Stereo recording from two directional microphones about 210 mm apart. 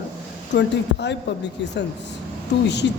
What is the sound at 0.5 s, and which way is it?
Speech, 55° left (ahead or behind).